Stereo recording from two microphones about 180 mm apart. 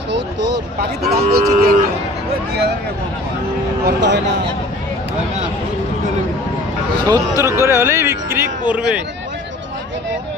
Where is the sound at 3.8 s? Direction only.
75° right (ahead or behind).